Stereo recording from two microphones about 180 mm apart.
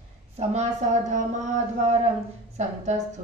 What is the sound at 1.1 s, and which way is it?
Speech, 40° right (ahead or behind).